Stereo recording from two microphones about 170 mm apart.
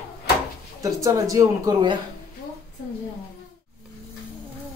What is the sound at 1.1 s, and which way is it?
Speech, 20° right (ahead or behind).